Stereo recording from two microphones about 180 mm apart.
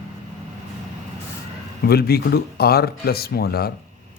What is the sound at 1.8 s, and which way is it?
Speech, 60° left (ahead or behind).